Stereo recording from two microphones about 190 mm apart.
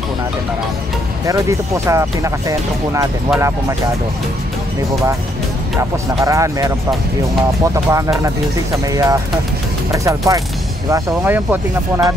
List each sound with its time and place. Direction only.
1.2 s speech: 15° right (ahead or behind)
5.8 s speech: 15° right (ahead or behind)
7.7 s speech: 15° right (ahead or behind)